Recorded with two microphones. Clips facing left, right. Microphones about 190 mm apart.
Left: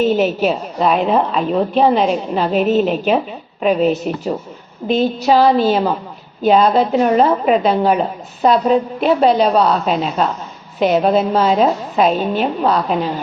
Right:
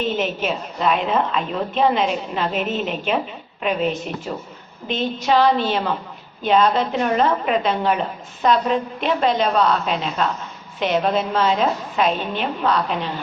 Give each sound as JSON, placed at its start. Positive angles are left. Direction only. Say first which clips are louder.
{"t": 0.0, "sound": "a woman's voice", "louder": "left 8 dB", "side_deg": 40}